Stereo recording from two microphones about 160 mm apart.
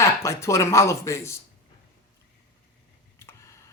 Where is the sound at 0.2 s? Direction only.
20° left (ahead or behind).